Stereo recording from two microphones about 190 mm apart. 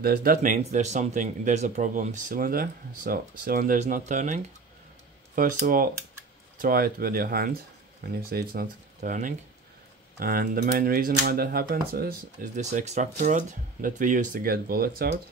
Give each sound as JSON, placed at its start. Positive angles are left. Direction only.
{"t": 0.0, "sound": "speech", "side_deg": -50}
{"t": 12.6, "sound": "speech", "side_deg": -35}